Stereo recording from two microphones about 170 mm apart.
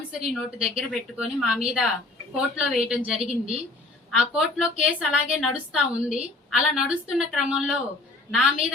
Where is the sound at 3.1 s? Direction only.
35° right (ahead or behind).